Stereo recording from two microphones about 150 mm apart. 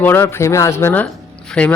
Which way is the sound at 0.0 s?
15° left (ahead or behind).